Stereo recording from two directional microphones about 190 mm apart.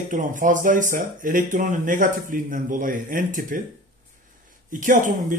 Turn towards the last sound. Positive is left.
turn(degrees=-45)  # may be behind; listen again after turning